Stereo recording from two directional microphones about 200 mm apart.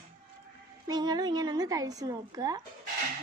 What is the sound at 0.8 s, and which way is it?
Speech, 20° right (ahead or behind).